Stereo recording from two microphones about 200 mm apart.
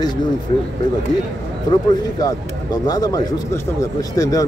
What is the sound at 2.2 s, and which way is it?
A man's voice, 20° left (ahead or behind).